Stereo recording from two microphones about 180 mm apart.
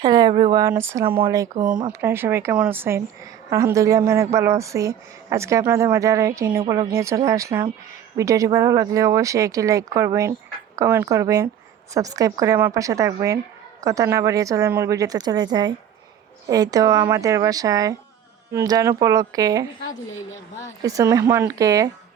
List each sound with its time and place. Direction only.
0.0 s a sound: 20° right (ahead or behind)
1.3 s a woman's voice: 20° right (ahead or behind)
20.8 s speech: 20° right (ahead or behind)